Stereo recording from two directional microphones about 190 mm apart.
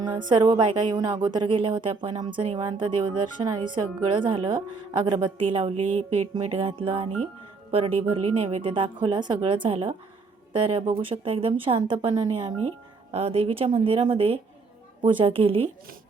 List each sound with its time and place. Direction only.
0.2 s a woman's voice: 25° right (ahead or behind)